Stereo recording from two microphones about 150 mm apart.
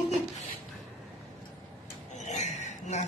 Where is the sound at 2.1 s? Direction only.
50° left (ahead or behind).